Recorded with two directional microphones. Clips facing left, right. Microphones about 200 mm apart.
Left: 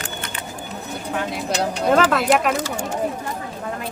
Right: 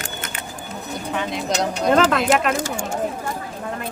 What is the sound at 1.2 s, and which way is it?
Speech, 5° left (ahead or behind).